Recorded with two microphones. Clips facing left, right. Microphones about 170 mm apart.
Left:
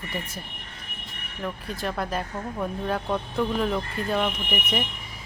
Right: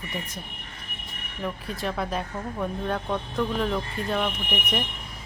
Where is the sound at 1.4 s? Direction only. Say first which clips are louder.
Even; centre (ahead or behind).